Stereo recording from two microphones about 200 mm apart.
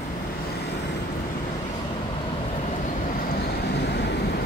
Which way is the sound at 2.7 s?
45° left (ahead or behind).